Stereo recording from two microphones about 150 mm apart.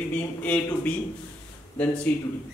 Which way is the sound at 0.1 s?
10° left (ahead or behind).